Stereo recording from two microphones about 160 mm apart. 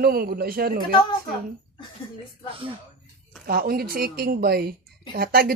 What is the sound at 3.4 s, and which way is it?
A woman's voice, 70° right (ahead or behind).